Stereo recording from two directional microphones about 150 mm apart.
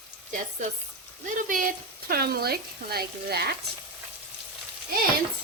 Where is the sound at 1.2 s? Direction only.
60° right (ahead or behind); by 3.4 s 90° right.